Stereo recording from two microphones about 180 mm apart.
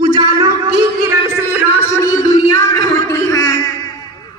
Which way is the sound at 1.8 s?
15° left (ahead or behind).